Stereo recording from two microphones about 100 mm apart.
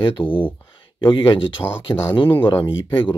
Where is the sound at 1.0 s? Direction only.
55° left (ahead or behind).